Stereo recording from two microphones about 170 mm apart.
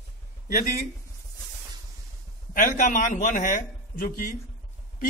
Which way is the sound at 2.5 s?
55° left (ahead or behind).